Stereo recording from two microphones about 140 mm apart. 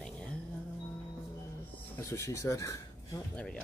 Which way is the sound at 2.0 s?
20° left (ahead or behind).